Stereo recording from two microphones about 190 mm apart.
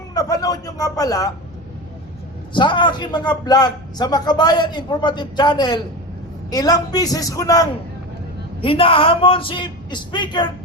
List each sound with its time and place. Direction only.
0.1 s a man's voice: 20° left (ahead or behind)
2.5 s a man's voice: 25° left (ahead or behind)